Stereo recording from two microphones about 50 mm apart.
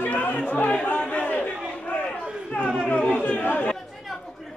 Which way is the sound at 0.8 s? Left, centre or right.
Left.